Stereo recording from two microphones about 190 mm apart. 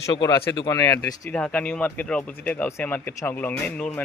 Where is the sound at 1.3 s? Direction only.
5° left (ahead or behind).